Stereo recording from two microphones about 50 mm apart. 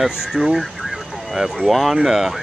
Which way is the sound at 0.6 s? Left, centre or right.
Centre.